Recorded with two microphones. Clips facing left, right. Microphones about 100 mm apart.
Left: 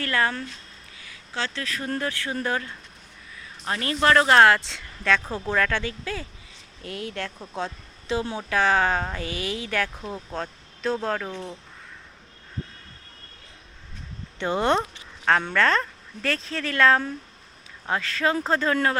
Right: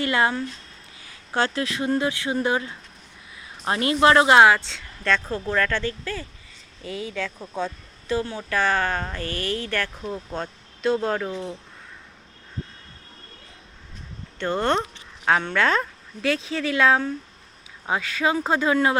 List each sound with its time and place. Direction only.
0.0 s speech: 20° right (ahead or behind)
1.3 s speech: 45° right (ahead or behind)
1.8 s speech: 15° right (ahead or behind)
7.5 s speech: 15° left (ahead or behind); by 11.5 s 5° right (ahead or behind)
14.3 s speech: 10° left (ahead or behind)
15.2 s speech: 5° right (ahead or behind)